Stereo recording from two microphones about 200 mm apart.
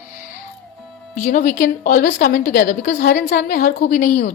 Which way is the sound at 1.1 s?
40° left (ahead or behind).